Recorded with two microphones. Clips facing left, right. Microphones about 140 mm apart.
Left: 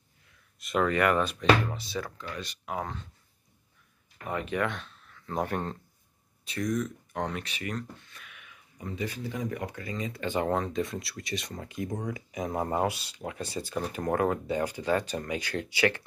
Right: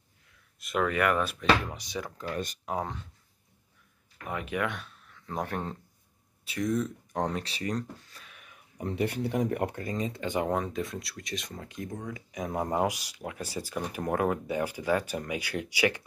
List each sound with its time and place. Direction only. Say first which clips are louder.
0.6 s speech: left 2 dB; centre (ahead or behind)
1.7 s speech: left 2 dB; 15° right (ahead or behind)
2.1 s speech: right 5 dB; 45° right (ahead or behind)
2.8 s speech: right 1 dB; 15° right (ahead or behind)
4.3 s speech: left 2 dB; 10° right (ahead or behind)
6.6 s speech: right 1 dB; 30° right (ahead or behind)
8.7 s speech: right 5 dB; 65° right (ahead or behind); by 10.1 s 40° right (ahead or behind)
10.1 s speech: left 3 dB; 15° right (ahead or behind); by 12.5 s 5° left (ahead or behind)
12.5 s speech: right 1 dB; 15° right (ahead or behind)